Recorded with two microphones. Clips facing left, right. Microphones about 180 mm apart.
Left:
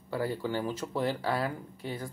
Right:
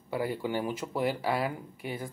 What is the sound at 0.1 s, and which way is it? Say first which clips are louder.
Speech: right 1 dB; 15° right (ahead or behind).